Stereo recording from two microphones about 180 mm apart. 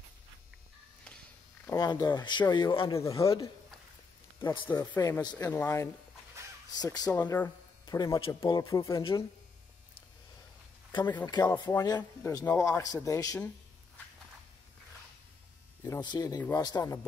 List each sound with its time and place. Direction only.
1.7 s speech: 20° left (ahead or behind)
2.9 s speech: 15° left (ahead or behind)
4.6 s speech: 15° left (ahead or behind)
5.5 s speech: 10° left (ahead or behind)
6.7 s speech: 20° left (ahead or behind)
7.1 s speech: 10° left (ahead or behind)
11.2 s speech: 25° left (ahead or behind)
15.8 s speech: 25° left (ahead or behind)